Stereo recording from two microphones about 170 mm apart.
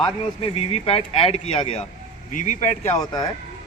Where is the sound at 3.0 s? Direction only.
20° left (ahead or behind).